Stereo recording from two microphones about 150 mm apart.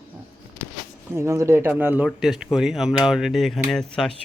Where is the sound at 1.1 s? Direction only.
20° right (ahead or behind).